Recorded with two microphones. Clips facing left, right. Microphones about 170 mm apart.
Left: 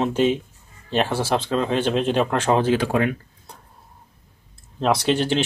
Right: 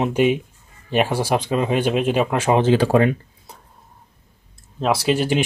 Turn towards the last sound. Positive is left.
turn(degrees=-10)  # may be behind; listen again after turning